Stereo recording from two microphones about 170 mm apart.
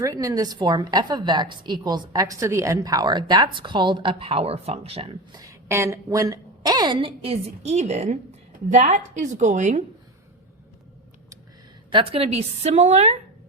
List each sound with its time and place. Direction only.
0.0 s a woman's voice: 20° right (ahead or behind); by 9.8 s 45° right (ahead or behind)
11.9 s a woman's voice: 30° right (ahead or behind)